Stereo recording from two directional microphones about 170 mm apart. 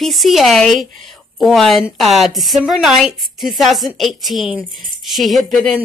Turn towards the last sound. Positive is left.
turn(degrees=0)  # may be behind; listen again after turning